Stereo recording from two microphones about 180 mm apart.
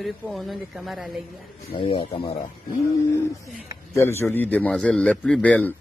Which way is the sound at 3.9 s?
15° left (ahead or behind).